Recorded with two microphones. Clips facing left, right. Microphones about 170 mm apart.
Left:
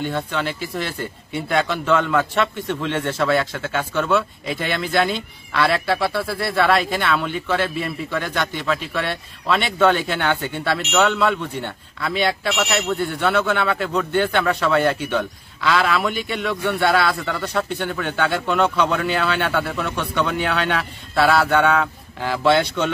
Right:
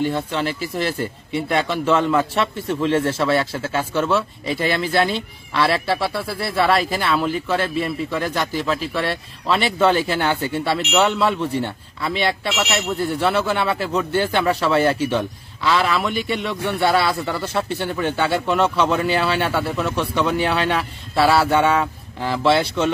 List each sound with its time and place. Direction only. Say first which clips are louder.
0.0 s speech: right 2 dB; centre (ahead or behind)
2.1 s a man's voice: even; 30° right (ahead or behind)
3.1 s speech: right 1 dB; centre (ahead or behind)
10.8 s speech: even; 10° right (ahead or behind)